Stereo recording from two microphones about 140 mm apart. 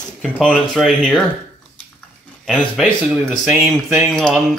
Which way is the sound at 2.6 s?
Centre (ahead or behind).